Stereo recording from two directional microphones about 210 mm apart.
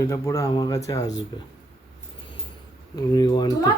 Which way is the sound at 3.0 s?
20° left (ahead or behind).